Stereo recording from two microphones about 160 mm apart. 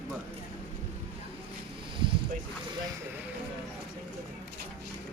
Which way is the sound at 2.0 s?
30° right (ahead or behind).